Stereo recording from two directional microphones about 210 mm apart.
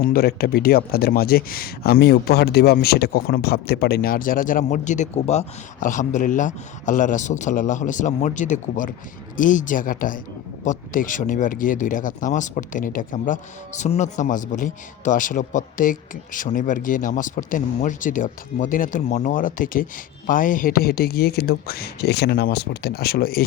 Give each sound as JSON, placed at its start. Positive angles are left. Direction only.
{"t": 0.0, "sound": "speech", "side_deg": 45}